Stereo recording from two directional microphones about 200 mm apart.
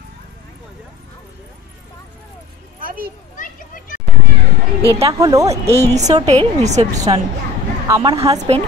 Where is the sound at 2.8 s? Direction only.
45° right (ahead or behind).